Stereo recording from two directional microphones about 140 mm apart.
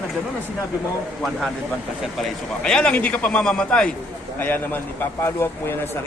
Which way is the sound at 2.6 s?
5° left (ahead or behind).